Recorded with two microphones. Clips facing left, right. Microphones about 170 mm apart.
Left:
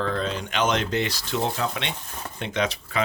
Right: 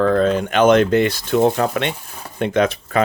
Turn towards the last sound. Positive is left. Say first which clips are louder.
# right 9 dB
turn(degrees=-50)  # may be behind; listen again after turning